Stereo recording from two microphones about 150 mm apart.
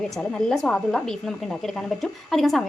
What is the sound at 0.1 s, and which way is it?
A woman's voice, 5° left (ahead or behind).